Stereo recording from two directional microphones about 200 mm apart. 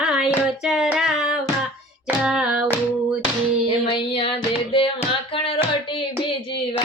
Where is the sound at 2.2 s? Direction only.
5° right (ahead or behind).